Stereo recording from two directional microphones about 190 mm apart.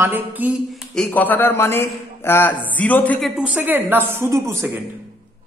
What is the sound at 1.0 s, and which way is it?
A man's voice, 10° left (ahead or behind).